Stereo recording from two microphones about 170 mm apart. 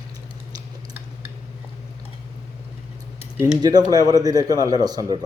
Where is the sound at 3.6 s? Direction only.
20° right (ahead or behind).